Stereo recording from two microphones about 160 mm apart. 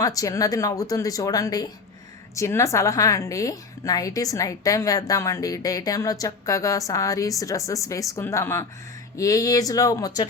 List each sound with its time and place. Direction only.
0.0 s a woman's voice: 20° left (ahead or behind)